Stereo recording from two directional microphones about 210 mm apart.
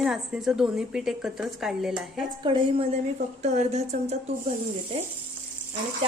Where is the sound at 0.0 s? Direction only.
5° right (ahead or behind).